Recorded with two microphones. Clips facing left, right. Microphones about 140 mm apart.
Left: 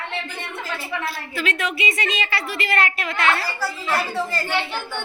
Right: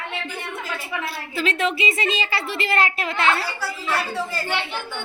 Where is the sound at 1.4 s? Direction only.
30° right (ahead or behind).